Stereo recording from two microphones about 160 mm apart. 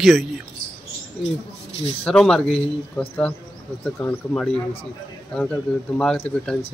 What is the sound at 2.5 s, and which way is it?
Speech, 35° left (ahead or behind).